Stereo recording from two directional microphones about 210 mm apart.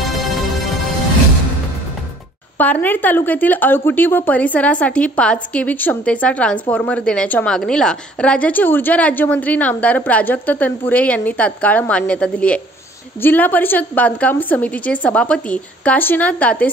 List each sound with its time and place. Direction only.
0.0 s music: centre (ahead or behind)
2.5 s a woman's voice: 10° left (ahead or behind)